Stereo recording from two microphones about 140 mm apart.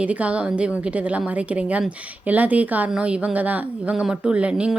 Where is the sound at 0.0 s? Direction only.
10° right (ahead or behind).